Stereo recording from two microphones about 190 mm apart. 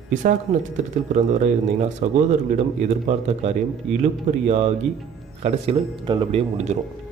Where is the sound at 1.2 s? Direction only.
40° right (ahead or behind).